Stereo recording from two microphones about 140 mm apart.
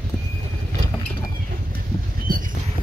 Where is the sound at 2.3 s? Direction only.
85° right.